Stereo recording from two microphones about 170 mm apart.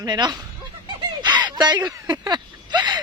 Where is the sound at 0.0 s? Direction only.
25° right (ahead or behind).